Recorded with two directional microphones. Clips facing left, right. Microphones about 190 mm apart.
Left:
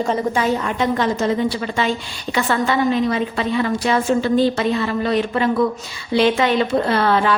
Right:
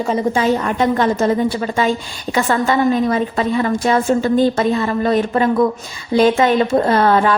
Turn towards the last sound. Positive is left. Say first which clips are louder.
# right 3 dB
turn(degrees=-45)  # may be behind; listen again after turning